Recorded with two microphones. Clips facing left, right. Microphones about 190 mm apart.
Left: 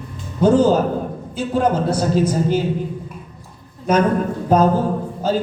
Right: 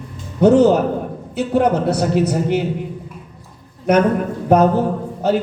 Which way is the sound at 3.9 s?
65° right (ahead or behind).